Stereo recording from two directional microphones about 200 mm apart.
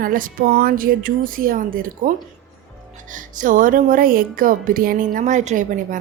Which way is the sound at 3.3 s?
40° right (ahead or behind).